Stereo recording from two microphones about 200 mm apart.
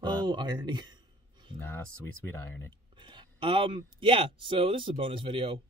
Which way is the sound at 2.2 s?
10° left (ahead or behind).